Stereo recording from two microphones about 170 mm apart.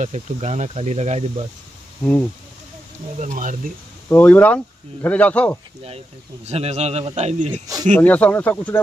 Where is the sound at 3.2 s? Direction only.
50° right (ahead or behind).